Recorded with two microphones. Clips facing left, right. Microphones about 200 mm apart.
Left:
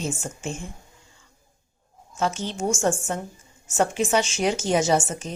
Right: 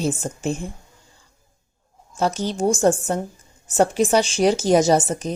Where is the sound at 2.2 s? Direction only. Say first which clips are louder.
Right 5 dB; 40° right (ahead or behind).